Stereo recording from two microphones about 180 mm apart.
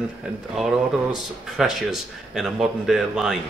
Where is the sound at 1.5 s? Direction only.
Centre (ahead or behind).